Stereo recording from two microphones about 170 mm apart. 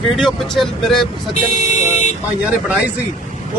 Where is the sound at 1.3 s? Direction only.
45° left (ahead or behind).